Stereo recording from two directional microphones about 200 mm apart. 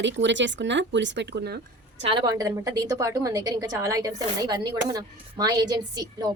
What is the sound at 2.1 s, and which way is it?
A woman's voice, 20° right (ahead or behind).